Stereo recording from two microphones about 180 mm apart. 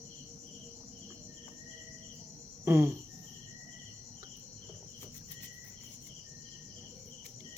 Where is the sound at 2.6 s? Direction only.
15° right (ahead or behind).